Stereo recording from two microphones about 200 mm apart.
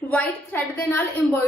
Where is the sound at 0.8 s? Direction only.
10° left (ahead or behind).